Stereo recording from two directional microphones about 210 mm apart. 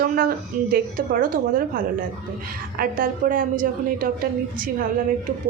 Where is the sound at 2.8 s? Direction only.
45° right (ahead or behind).